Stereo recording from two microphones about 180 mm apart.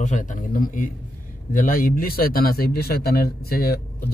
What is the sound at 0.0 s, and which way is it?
A man's voice, 45° left (ahead or behind).